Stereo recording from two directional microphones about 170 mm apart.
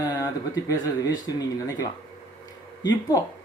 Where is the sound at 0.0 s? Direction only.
20° left (ahead or behind).